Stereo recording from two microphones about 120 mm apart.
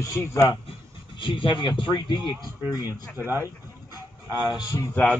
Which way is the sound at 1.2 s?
45° left (ahead or behind).